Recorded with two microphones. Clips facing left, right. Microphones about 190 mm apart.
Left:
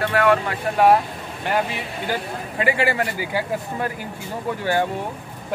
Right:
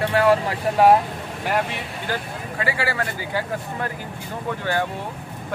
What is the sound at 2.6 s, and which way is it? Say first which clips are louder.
Speech: left 4 dB; 20° left (ahead or behind).